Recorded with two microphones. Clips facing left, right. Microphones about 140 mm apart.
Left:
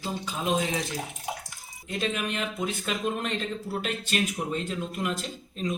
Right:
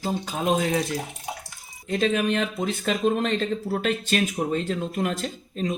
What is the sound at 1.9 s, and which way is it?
Speech, 40° right (ahead or behind).